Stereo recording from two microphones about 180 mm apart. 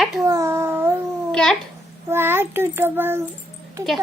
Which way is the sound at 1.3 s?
5° left (ahead or behind).